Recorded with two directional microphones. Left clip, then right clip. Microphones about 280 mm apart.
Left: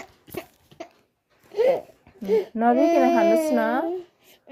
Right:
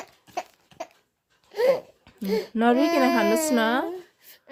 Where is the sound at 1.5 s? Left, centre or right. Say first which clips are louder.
Left 1 dB; right.